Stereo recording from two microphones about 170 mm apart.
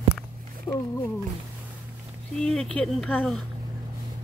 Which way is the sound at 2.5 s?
5° left (ahead or behind).